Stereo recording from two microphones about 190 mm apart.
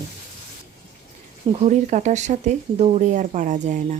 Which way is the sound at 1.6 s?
40° right (ahead or behind).